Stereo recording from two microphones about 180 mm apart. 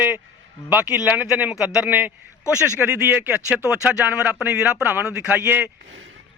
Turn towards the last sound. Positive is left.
turn(degrees=-10)  # may be behind; listen again after turning